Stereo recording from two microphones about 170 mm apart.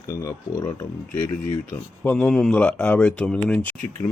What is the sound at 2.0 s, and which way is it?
Speech, 10° left (ahead or behind).